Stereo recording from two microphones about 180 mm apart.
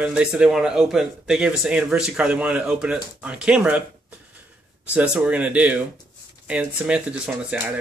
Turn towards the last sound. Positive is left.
turn(degrees=-5)  # may be behind; listen again after turning